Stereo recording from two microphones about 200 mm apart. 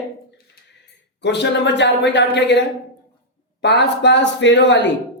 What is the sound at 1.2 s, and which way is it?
A woman's voice, 60° left (ahead or behind).